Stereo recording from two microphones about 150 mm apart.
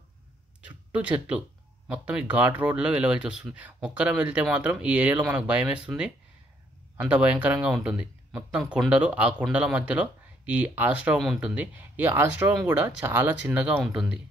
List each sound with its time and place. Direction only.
0.7 s speech: 10° right (ahead or behind)